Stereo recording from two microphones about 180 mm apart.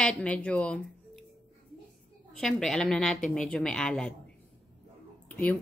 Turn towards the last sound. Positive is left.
turn(degrees=10)  # may be behind; listen again after turning